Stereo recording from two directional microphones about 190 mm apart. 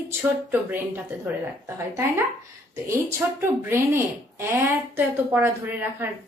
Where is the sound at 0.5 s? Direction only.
10° right (ahead or behind).